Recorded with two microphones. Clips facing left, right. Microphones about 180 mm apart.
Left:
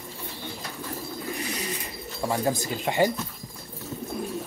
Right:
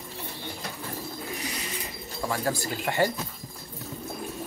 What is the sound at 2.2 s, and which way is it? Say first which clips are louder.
Speech: left 3 dB; 20° left (ahead or behind).